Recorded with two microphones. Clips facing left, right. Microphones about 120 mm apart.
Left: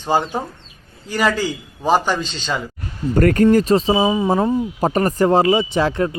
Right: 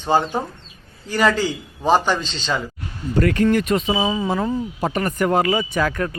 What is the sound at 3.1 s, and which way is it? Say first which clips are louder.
Speech: left 4 dB; 45° left (ahead or behind).